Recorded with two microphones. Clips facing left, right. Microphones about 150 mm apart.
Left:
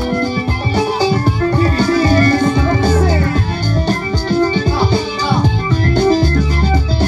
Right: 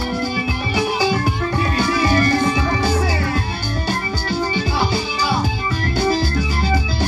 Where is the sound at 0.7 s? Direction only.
40° left (ahead or behind).